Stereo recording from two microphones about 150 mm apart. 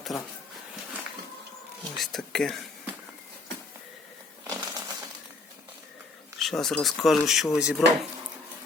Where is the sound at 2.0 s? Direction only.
Centre (ahead or behind).